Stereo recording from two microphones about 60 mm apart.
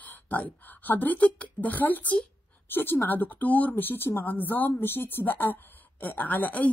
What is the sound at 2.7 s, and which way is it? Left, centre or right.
A woman's voice, left.